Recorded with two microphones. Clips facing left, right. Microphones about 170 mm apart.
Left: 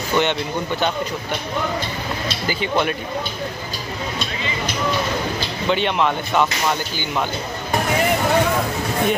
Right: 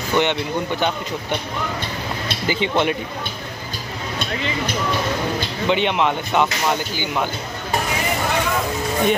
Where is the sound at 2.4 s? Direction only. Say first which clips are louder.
Right 2 dB; 20° right (ahead or behind).